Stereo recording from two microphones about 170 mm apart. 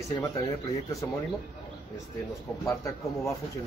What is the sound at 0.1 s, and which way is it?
Speech, 20° left (ahead or behind).